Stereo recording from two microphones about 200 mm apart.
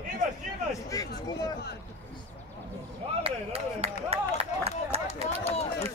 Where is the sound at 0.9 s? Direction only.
15° left (ahead or behind).